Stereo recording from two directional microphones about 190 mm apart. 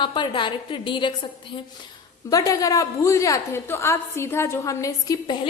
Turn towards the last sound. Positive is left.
turn(degrees=20)  # may be behind; listen again after turning